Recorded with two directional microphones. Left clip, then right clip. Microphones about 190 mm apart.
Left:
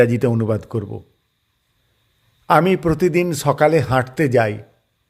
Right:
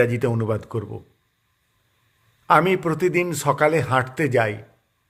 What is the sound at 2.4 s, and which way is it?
A man's voice, 45° left (ahead or behind).